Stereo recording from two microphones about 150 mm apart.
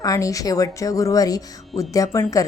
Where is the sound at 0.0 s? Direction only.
20° left (ahead or behind).